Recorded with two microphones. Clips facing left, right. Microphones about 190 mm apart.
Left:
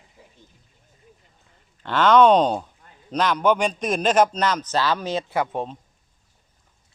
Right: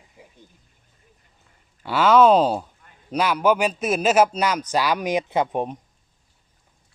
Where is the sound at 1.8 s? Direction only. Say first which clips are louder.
Even; 10° right (ahead or behind).